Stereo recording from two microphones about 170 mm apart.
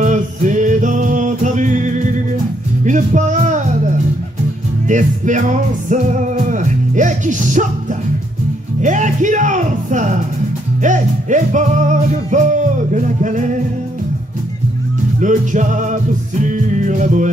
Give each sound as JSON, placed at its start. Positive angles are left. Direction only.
{"t": 0.0, "sound": "music", "side_deg": -45}
{"t": 8.8, "sound": "music", "side_deg": -45}
{"t": 15.1, "sound": "music", "side_deg": -45}